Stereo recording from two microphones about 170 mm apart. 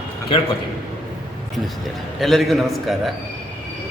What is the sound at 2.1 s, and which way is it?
Speech, centre (ahead or behind).